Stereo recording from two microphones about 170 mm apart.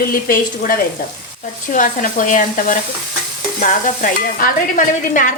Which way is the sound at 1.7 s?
50° left (ahead or behind).